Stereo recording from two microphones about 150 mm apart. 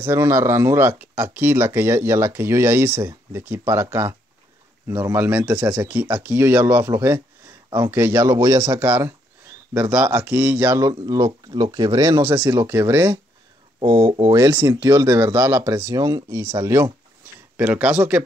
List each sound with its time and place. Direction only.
0.0 s speech: 20° right (ahead or behind)
13.7 s speech: 30° right (ahead or behind)
14.3 s speech: 15° right (ahead or behind)